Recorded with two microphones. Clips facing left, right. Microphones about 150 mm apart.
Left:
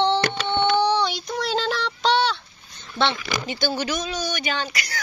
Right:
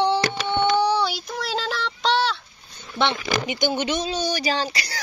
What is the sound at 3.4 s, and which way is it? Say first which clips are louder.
Speech: even; 20° right (ahead or behind).